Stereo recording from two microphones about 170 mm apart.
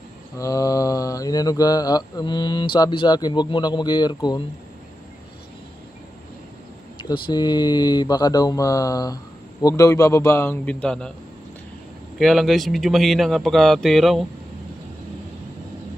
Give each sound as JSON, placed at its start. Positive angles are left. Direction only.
{"t": 0.4, "sound": "speech", "side_deg": 20}
{"t": 7.0, "sound": "speech", "side_deg": 25}
{"t": 12.2, "sound": "speech", "side_deg": 0}